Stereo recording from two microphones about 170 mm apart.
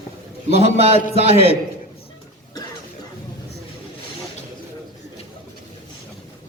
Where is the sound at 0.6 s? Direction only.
35° right (ahead or behind).